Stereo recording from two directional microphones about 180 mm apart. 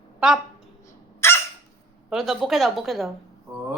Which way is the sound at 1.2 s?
15° left (ahead or behind).